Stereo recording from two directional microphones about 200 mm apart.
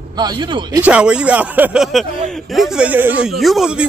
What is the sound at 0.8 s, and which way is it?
Speech, 5° right (ahead or behind).